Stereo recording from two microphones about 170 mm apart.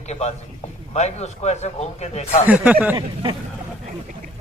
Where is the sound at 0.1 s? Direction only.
40° left (ahead or behind).